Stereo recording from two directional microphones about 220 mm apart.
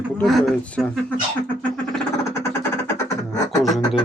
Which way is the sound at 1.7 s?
10° left (ahead or behind).